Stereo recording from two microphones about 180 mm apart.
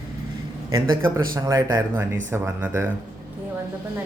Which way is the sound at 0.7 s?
20° right (ahead or behind).